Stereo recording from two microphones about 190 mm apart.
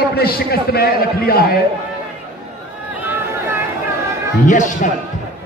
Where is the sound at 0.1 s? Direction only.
55° left (ahead or behind).